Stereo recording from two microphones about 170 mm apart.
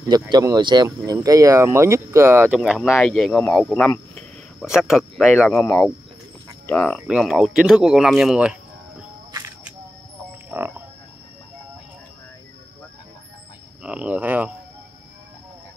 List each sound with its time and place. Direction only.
0.1 s speech: 20° right (ahead or behind); by 8.5 s 5° right (ahead or behind)
13.8 s speech: 5° right (ahead or behind)